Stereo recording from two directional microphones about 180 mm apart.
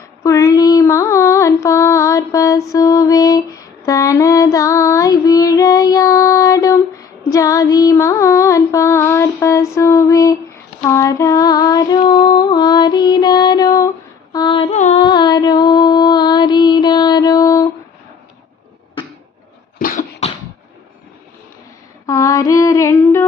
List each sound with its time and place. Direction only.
0.2 s mantra: 20° left (ahead or behind)
10.8 s female singing: 15° left (ahead or behind); by 15.0 s 40° left (ahead or behind)
15.0 s mantra: 25° left (ahead or behind)
19.8 s dog: 50° left (ahead or behind)
22.0 s female singing: 15° left (ahead or behind)